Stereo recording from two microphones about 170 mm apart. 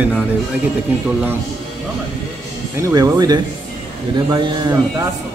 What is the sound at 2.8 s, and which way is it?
Speech, 20° right (ahead or behind).